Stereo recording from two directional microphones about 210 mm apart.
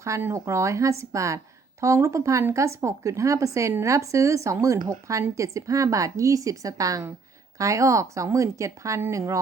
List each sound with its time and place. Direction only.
0.0 s speech: 10° right (ahead or behind)